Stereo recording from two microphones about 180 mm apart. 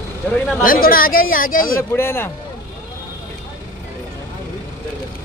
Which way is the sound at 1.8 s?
15° left (ahead or behind).